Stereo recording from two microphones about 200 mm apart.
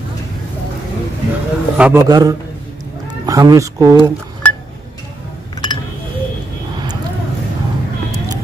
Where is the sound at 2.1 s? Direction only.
20° right (ahead or behind).